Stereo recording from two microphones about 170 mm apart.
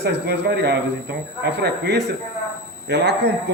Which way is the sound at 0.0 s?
80° right.